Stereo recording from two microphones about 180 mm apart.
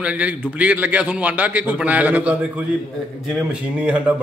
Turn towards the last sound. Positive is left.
turn(degrees=-10)  # may be behind; listen again after turning